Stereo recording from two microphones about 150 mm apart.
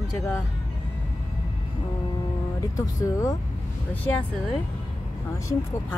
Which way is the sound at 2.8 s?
20° left (ahead or behind).